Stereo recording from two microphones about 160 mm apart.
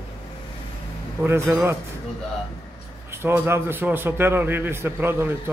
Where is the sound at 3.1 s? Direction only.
15° right (ahead or behind).